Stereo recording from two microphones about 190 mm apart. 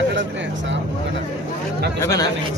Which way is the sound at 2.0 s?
15° left (ahead or behind).